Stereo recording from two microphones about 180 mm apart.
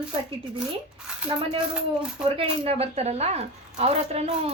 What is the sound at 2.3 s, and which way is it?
Speech, 30° right (ahead or behind).